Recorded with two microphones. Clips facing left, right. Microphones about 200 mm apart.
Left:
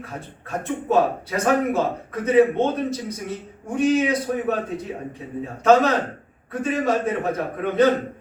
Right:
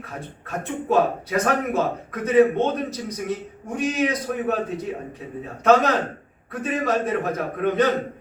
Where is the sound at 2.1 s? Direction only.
30° left (ahead or behind).